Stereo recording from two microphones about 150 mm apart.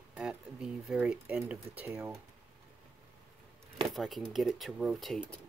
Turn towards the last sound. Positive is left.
turn(degrees=0)  # may be behind; listen again after turning